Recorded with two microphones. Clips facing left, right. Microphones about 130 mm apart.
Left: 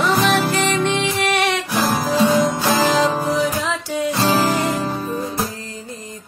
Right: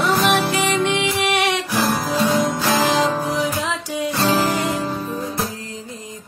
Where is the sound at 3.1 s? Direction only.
15° left (ahead or behind).